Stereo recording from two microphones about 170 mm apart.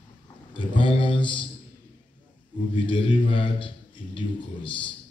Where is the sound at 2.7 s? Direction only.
30° left (ahead or behind).